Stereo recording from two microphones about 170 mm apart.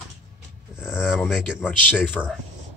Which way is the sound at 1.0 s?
5° right (ahead or behind).